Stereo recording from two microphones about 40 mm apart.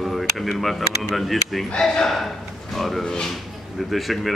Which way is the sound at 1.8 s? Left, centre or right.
Centre.